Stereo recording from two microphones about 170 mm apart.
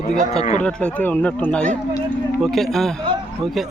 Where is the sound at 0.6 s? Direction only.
5° left (ahead or behind).